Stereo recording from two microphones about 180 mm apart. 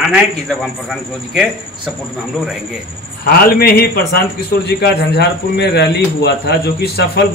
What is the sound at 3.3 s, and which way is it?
A man's voice, 60° left (ahead or behind).